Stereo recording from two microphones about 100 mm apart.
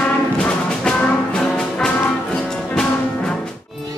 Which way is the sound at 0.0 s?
10° left (ahead or behind).